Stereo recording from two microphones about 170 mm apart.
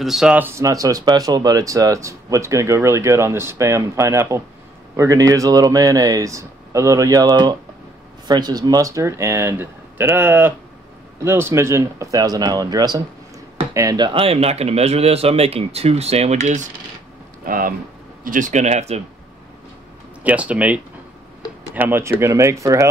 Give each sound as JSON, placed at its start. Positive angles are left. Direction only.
{"t": 0.0, "sound": "speech", "side_deg": 0}
{"t": 17.5, "sound": "speech", "side_deg": -55}
{"t": 20.2, "sound": "speech", "side_deg": -10}